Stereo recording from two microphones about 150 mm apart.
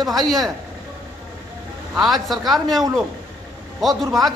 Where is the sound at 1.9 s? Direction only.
Centre (ahead or behind).